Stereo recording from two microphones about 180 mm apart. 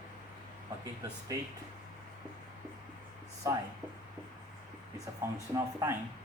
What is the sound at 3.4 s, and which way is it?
Speech, 20° right (ahead or behind).